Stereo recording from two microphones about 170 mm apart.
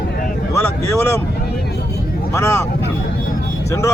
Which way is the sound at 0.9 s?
15° left (ahead or behind).